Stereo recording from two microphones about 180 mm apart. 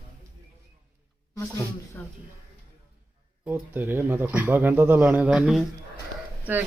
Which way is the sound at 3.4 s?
10° right (ahead or behind).